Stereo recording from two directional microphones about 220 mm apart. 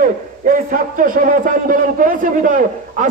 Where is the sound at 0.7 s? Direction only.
40° right (ahead or behind).